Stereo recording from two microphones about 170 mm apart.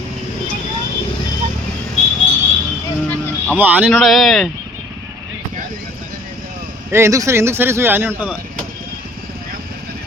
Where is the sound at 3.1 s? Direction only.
10° left (ahead or behind).